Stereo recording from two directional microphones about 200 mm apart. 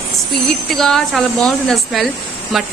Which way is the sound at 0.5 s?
Centre (ahead or behind).